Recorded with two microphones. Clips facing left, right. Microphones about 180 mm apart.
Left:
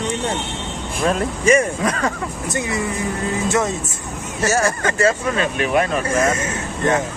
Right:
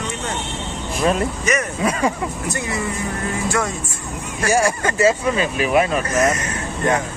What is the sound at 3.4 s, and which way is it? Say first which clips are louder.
Speech: left 3 dB; 20° left (ahead or behind).